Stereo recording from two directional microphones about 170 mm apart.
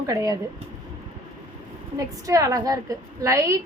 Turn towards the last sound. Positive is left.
turn(degrees=-15)  # may be behind; listen again after turning